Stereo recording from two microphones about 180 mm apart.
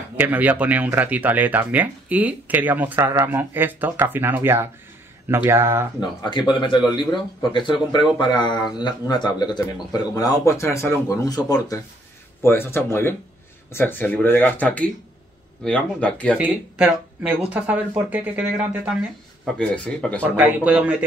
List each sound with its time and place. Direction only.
0.1 s speech: 10° right (ahead or behind)
5.9 s speech: 25° left (ahead or behind); by 16.3 s 5° left (ahead or behind)
16.3 s speech: 5° right (ahead or behind)
19.4 s speech: 5° left (ahead or behind)
20.3 s speech: 10° right (ahead or behind)